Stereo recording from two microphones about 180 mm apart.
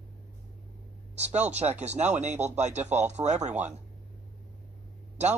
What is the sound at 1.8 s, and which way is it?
Speech, 40° right (ahead or behind).